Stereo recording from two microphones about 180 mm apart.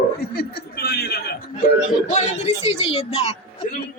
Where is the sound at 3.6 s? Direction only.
50° left (ahead or behind).